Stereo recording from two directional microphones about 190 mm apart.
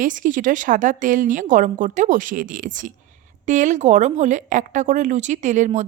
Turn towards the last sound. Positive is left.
turn(degrees=-40)  # may be behind; listen again after turning